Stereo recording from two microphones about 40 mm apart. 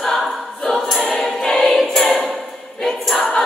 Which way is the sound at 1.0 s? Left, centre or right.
Centre.